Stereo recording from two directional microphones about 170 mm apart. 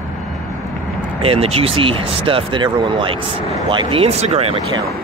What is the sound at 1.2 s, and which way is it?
Speech, 35° right (ahead or behind).